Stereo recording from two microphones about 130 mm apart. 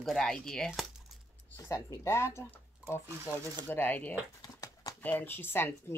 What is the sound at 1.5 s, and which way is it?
Speech, 25° left (ahead or behind).